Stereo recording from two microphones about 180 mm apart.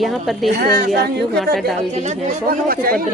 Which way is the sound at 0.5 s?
60° right (ahead or behind).